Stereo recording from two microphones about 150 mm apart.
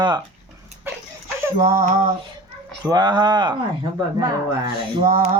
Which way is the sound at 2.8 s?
30° right (ahead or behind).